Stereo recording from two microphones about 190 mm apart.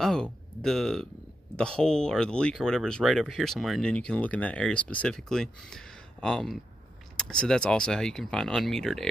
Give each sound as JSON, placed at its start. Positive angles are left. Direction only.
{"t": 0.0, "sound": "speech", "side_deg": 5}